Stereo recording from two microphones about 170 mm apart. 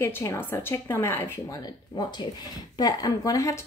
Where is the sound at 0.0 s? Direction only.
15° left (ahead or behind).